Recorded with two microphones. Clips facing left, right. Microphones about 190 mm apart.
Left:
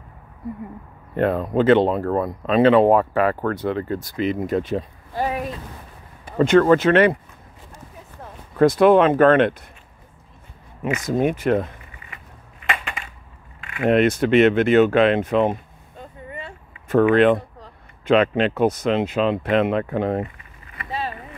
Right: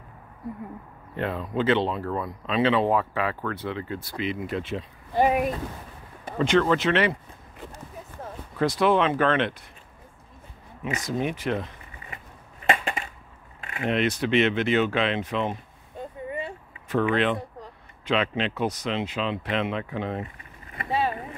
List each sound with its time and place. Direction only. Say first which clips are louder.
1.1 s speech: left 8 dB; 50° left (ahead or behind)
6.3 s speech: left 7 dB; 50° left (ahead or behind)
8.5 s speech: left 8 dB; 50° left (ahead or behind)
10.8 s speech: left 7 dB; 50° left (ahead or behind)
12.6 s a sound: right 3 dB; 35° right (ahead or behind)
13.8 s speech: left 8 dB; 50° left (ahead or behind)
16.8 s speech: left 8 dB; 50° left (ahead or behind)